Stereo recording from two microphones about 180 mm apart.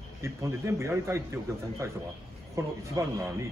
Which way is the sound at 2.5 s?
15° right (ahead or behind).